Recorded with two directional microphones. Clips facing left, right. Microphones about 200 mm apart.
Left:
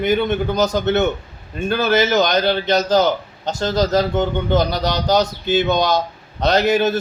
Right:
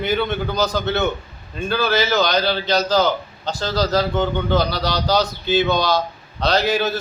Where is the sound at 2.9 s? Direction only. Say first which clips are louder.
Left 2 dB; 20° left (ahead or behind).